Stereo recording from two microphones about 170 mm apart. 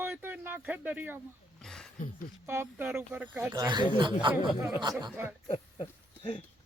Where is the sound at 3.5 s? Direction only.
25° right (ahead or behind).